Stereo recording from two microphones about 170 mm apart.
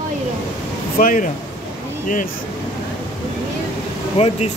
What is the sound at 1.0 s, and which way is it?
Speech, 55° left (ahead or behind).